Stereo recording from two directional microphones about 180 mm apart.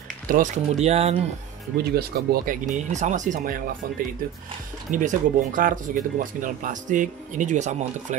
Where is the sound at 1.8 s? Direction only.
60° right (ahead or behind).